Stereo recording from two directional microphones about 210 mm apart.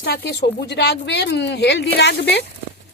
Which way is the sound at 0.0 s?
55° left (ahead or behind).